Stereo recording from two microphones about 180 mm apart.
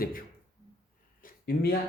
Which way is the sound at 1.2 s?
60° left (ahead or behind).